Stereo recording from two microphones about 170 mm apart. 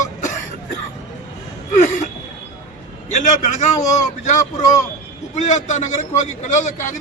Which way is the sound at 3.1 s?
45° left (ahead or behind).